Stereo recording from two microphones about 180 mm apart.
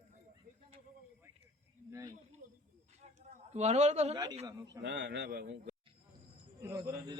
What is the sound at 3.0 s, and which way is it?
Speech, 40° right (ahead or behind).